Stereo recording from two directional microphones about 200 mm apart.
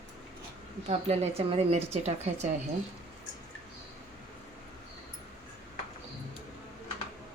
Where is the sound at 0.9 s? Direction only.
30° right (ahead or behind).